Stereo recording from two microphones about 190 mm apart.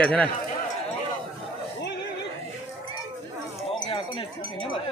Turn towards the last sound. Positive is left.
turn(degrees=25)  # may be behind; listen again after turning